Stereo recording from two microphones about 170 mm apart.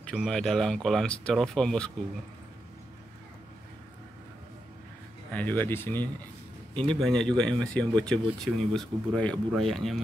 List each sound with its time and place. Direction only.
0.1 s speech: centre (ahead or behind)
5.3 s speech: 10° left (ahead or behind)
6.7 s speech: 30° right (ahead or behind)
7.0 s speech: 5° left (ahead or behind)